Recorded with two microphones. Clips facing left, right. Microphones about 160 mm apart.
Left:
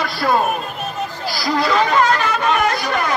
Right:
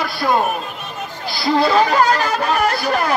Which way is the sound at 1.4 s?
30° right (ahead or behind).